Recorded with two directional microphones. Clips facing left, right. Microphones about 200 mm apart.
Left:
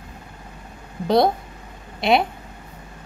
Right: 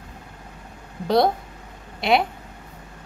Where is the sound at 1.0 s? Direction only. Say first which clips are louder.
Left 1 dB; 20° left (ahead or behind).